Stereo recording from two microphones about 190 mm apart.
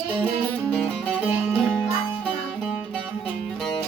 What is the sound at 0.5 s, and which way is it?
Music, 5° left (ahead or behind).